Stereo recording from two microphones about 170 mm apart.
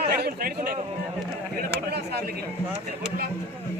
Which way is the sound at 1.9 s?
70° right (ahead or behind).